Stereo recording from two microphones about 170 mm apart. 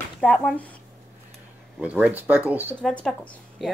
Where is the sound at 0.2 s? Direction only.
Centre (ahead or behind).